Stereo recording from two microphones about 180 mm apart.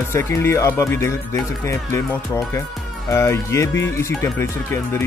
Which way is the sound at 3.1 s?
15° left (ahead or behind).